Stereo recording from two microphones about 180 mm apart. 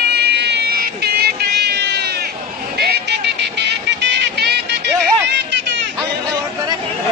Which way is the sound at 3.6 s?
70° right (ahead or behind).